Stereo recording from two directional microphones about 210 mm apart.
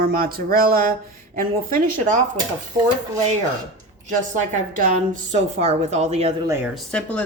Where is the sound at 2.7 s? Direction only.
20° right (ahead or behind).